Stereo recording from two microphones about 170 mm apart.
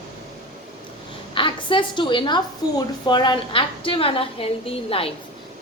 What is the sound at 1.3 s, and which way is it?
A woman's voice, 30° left (ahead or behind).